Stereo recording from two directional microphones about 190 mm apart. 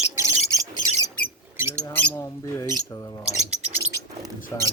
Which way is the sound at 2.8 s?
20° left (ahead or behind).